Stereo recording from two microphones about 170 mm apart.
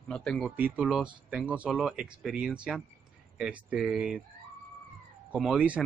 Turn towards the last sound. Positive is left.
turn(degrees=-5)  # may be behind; listen again after turning